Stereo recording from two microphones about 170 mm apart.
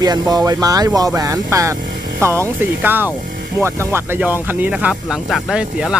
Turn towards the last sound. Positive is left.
turn(degrees=-5)  # may be behind; listen again after turning